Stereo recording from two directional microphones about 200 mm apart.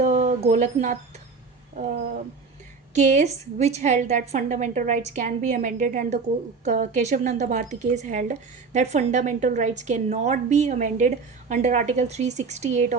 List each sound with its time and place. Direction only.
0.0 s wind chime: 35° right (ahead or behind)
2.9 s speech: 35° right (ahead or behind)